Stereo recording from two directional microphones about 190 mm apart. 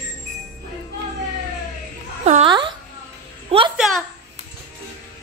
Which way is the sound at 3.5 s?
30° right (ahead or behind).